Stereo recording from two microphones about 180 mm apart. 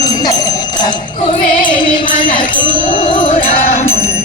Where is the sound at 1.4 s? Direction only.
50° left (ahead or behind).